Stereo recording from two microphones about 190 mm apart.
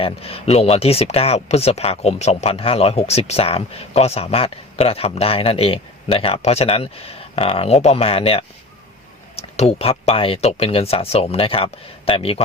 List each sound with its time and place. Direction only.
0.0 s speech: 30° left (ahead or behind)